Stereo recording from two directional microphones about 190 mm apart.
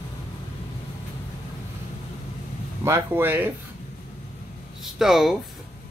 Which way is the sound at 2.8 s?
15° right (ahead or behind).